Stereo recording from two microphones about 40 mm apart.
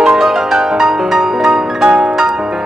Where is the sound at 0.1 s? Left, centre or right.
Centre.